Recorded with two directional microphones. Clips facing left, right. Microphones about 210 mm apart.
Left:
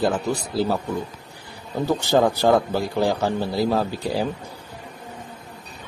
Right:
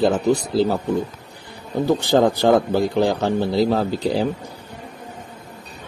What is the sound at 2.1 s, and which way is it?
A man's voice, 15° right (ahead or behind).